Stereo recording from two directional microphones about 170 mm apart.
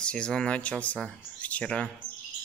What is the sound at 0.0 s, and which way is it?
Speech, 5° left (ahead or behind).